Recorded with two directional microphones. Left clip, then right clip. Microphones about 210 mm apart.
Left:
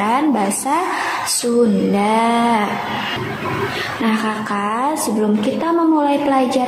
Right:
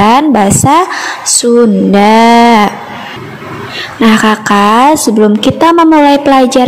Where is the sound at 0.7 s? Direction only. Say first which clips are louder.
Right 12 dB; 45° right (ahead or behind).